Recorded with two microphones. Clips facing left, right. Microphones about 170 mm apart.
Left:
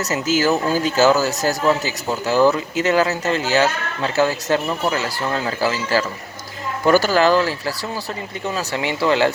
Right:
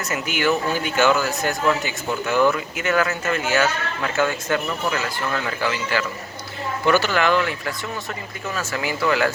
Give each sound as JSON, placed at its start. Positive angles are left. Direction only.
{"t": 0.0, "sound": "speech", "side_deg": 35}